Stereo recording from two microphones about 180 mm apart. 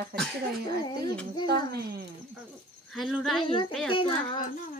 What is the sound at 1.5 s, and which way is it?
Speech, 60° right (ahead or behind).